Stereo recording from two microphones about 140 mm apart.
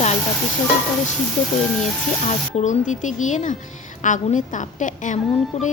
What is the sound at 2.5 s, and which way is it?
Speech, 60° left (ahead or behind).